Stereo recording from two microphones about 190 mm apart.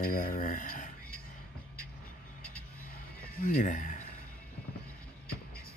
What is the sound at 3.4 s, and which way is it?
Speech, 45° left (ahead or behind).